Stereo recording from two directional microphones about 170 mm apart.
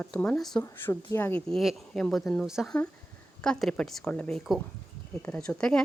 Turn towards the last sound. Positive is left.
turn(degrees=5)  # may be behind; listen again after turning